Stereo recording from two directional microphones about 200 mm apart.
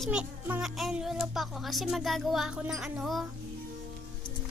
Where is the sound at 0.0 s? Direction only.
5° right (ahead or behind).